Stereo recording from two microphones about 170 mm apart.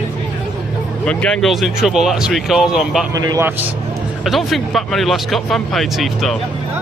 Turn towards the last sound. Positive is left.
turn(degrees=0)  # may be behind; listen again after turning